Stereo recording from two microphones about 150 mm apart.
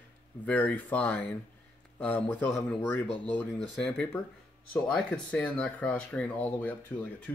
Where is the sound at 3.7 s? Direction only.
5° left (ahead or behind).